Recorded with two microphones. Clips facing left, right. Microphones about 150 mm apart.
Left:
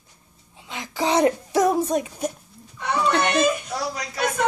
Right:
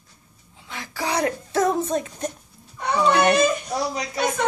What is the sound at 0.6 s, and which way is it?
A woman's voice, 20° left (ahead or behind).